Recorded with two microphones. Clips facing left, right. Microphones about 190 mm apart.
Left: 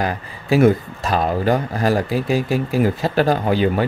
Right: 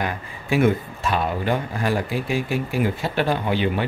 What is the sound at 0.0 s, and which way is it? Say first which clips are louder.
Speech: left 4 dB; 35° left (ahead or behind).